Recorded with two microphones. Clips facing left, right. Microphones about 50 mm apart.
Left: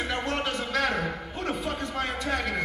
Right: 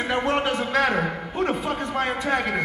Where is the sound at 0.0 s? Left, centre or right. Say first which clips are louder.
Right 6 dB; right.